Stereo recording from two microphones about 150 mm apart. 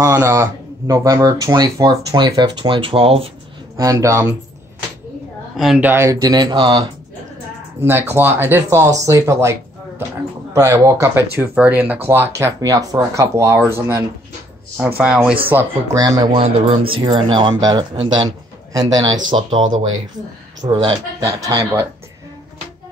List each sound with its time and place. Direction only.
0.0 s speech: 15° right (ahead or behind); by 3.3 s 40° right (ahead or behind)
3.7 s speech: 20° right (ahead or behind)
5.6 s speech: centre (ahead or behind)
5.9 s speech: 20° right (ahead or behind)
7.8 s speech: 15° right (ahead or behind)
15.5 s speech: 20° right (ahead or behind)